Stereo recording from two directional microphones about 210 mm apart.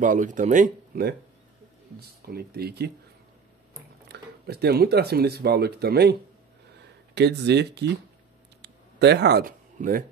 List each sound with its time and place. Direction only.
0.0 s speech: 40° right (ahead or behind)
4.1 s speech: 50° right (ahead or behind)
8.6 s a sound: 55° right (ahead or behind)
9.8 s speech: 40° right (ahead or behind)